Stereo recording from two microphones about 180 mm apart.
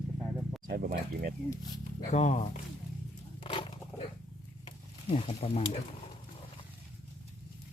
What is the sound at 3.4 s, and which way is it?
Roaring cats, 30° left (ahead or behind).